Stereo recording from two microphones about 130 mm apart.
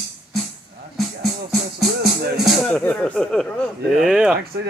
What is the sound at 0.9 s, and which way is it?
Music, centre (ahead or behind).